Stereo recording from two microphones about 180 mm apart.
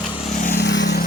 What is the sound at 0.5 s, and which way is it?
Vehicle, 75° left (ahead or behind).